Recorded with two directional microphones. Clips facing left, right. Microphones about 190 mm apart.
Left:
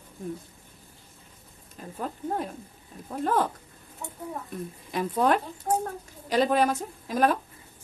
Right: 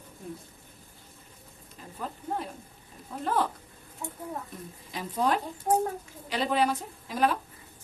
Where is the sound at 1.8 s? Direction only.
50° left (ahead or behind).